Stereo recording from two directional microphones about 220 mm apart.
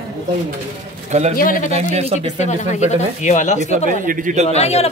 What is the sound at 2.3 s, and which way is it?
Speech, 30° left (ahead or behind).